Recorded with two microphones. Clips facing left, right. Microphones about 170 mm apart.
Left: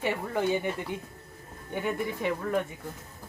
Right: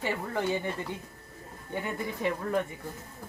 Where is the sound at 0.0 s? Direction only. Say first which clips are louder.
Left 2 dB; 15° left (ahead or behind).